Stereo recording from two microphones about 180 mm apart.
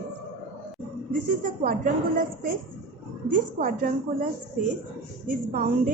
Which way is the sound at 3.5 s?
50° right (ahead or behind).